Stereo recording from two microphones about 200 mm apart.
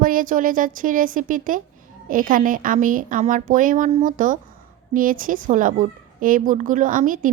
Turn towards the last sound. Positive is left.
turn(degrees=-40)  # may be behind; listen again after turning